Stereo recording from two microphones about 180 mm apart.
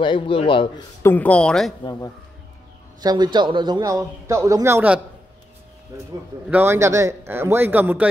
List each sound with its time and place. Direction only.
0.0 s speech: 25° left (ahead or behind)
1.0 s speech: 10° left (ahead or behind)
3.0 s a man's voice: 25° right (ahead or behind)